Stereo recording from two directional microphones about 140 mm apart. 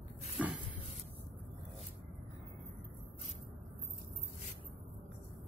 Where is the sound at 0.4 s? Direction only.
10° right (ahead or behind).